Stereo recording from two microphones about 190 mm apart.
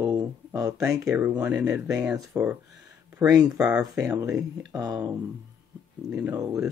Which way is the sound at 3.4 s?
5° right (ahead or behind).